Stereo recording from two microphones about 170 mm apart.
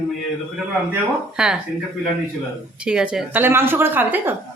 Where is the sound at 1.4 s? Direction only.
5° right (ahead or behind).